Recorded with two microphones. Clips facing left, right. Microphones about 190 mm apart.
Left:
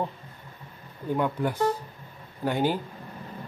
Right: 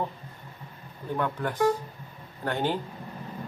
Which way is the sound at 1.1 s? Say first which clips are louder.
Left 2 dB; 10° left (ahead or behind).